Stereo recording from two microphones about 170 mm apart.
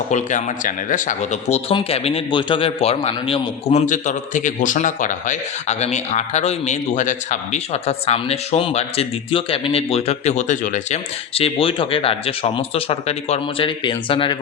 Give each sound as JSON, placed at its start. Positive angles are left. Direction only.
{"t": 0.1, "sound": "speech", "side_deg": 45}